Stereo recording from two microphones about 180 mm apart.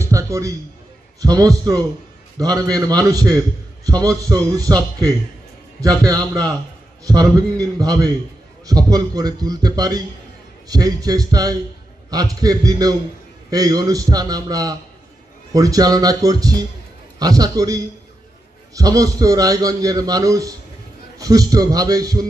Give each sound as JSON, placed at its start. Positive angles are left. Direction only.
{"t": 0.0, "sound": "music", "side_deg": -15}
{"t": 1.2, "sound": "a man's voice", "side_deg": -20}
{"t": 6.0, "sound": "a man's voice", "side_deg": -20}